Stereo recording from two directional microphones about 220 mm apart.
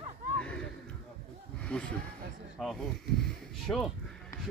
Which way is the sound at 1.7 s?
5° left (ahead or behind).